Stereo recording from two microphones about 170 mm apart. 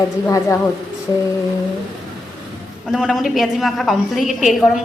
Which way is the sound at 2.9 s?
Centre (ahead or behind).